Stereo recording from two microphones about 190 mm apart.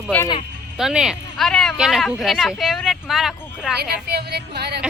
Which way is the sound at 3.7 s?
60° right (ahead or behind).